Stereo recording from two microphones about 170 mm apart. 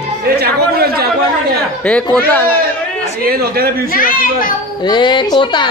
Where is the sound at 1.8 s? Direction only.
5° left (ahead or behind).